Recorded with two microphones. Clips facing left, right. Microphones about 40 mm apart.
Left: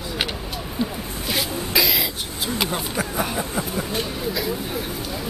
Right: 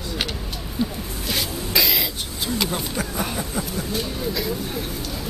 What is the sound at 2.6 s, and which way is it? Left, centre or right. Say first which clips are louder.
Speech: left 2 dB; centre.